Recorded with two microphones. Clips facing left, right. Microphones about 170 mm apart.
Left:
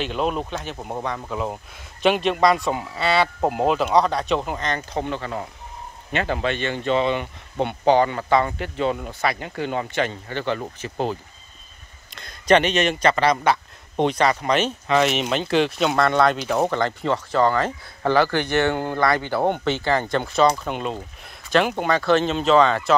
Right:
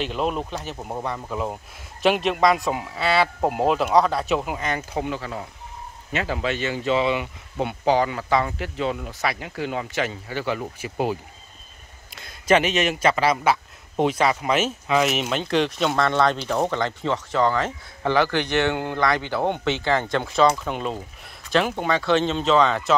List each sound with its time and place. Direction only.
0.0 s a man's voice: centre (ahead or behind)
18.6 s speech: 45° left (ahead or behind)
19.8 s a man's voice: 5° left (ahead or behind)